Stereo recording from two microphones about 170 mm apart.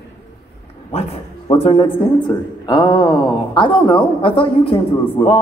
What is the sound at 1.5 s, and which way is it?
A man's voice, 35° left (ahead or behind).